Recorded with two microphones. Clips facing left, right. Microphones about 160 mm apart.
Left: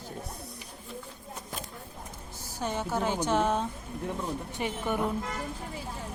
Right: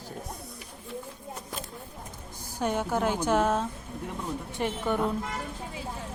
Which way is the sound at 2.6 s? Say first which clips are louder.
Right 3 dB; 10° right (ahead or behind).